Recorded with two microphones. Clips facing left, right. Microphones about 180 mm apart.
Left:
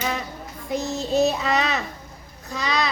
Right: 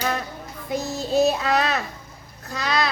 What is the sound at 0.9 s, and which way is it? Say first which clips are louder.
Speech: right 1 dB; centre (ahead or behind).